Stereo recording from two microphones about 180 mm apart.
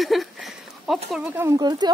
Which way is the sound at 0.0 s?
Centre (ahead or behind).